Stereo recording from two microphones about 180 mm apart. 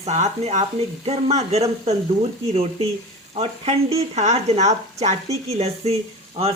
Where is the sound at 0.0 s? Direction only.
35° right (ahead or behind).